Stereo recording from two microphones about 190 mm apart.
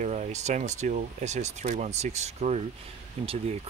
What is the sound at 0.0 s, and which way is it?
Speech, 35° right (ahead or behind).